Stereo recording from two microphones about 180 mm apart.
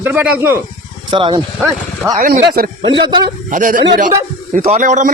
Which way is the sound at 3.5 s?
50° right (ahead or behind).